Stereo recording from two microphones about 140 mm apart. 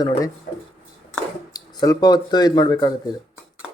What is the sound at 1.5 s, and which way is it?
Speech, 25° left (ahead or behind).